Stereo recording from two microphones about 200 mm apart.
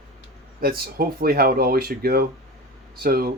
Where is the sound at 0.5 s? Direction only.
45° right (ahead or behind).